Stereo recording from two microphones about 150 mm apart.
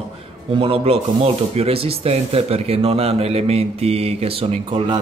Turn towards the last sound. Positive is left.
turn(degrees=-35)  # may be behind; listen again after turning